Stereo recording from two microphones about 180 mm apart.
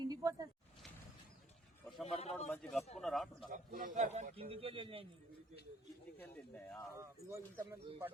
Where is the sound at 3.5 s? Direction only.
50° right (ahead or behind).